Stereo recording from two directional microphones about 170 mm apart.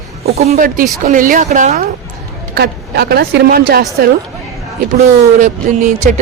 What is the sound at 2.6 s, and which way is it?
A woman's voice, 70° right (ahead or behind).